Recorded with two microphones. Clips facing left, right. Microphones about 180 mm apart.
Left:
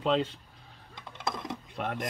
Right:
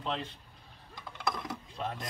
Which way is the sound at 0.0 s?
90° left.